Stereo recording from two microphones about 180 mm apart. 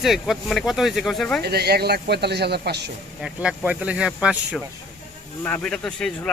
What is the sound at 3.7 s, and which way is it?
A man's voice, 5° right (ahead or behind).